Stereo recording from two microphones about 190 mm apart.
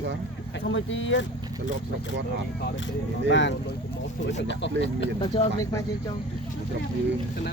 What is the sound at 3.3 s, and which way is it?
Speech, 70° left (ahead or behind).